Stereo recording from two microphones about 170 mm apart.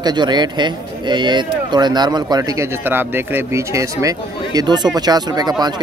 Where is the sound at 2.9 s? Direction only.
10° right (ahead or behind).